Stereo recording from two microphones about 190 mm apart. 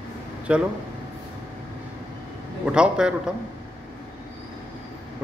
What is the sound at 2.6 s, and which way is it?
Speech, 5° right (ahead or behind).